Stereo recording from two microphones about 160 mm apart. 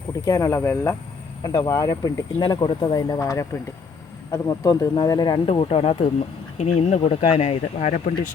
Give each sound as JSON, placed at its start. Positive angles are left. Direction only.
{"t": 0.3, "sound": "speech", "side_deg": 20}
{"t": 5.5, "sound": "speech", "side_deg": 35}